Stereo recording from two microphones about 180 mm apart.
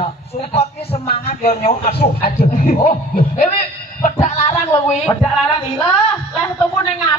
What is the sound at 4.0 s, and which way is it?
Music, 40° left (ahead or behind).